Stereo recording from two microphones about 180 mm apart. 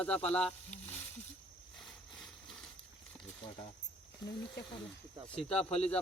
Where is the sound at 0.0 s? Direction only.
5° left (ahead or behind).